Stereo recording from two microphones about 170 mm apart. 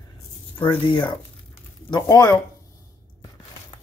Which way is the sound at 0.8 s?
30° left (ahead or behind).